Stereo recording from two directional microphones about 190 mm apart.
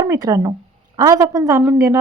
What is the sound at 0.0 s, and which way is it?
Speech, 20° right (ahead or behind).